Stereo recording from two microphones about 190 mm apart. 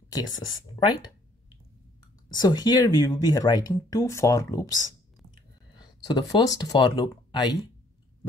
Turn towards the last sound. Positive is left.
turn(degrees=20)  # may be behind; listen again after turning